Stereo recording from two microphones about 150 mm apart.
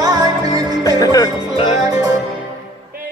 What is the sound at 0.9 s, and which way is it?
Music, 20° left (ahead or behind).